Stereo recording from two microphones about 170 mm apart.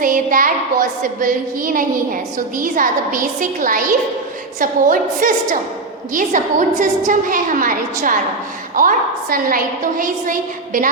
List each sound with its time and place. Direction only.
0.0 s a woman's voice: 55° right (ahead or behind)